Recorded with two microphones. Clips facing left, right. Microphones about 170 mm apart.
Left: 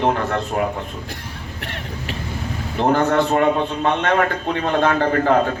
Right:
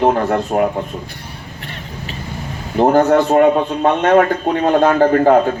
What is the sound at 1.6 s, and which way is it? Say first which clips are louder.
Vehicle: left 1 dB; 70° left (ahead or behind).